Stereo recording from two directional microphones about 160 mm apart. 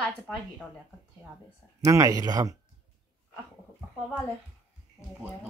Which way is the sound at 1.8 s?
20° right (ahead or behind).